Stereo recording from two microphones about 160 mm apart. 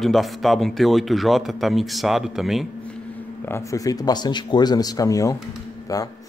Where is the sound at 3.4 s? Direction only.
20° left (ahead or behind).